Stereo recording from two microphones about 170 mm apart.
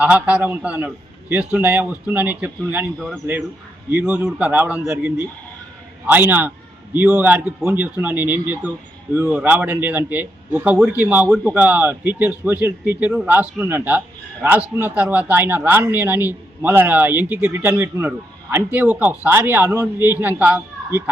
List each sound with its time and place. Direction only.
0.0 s a man's voice: 5° right (ahead or behind)